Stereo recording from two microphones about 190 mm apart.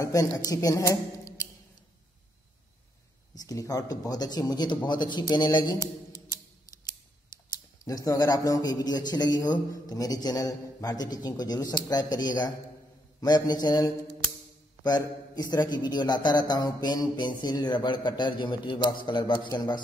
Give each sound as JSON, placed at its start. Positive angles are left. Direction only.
{"t": 0.0, "sound": "a woman's voice", "side_deg": 20}
{"t": 3.3, "sound": "a man's voice", "side_deg": 20}
{"t": 7.8, "sound": "a man's voice", "side_deg": 15}